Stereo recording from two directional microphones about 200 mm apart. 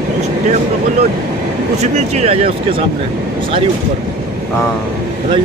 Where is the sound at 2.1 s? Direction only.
30° right (ahead or behind).